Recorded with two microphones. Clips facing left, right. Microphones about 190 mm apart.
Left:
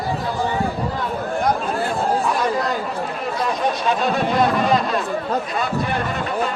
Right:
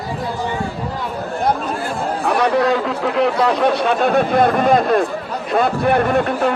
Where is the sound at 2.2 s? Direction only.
65° right (ahead or behind).